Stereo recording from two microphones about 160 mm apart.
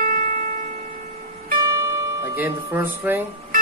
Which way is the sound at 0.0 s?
60° right (ahead or behind).